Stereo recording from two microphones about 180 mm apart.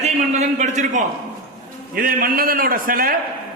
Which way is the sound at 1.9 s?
55° right (ahead or behind).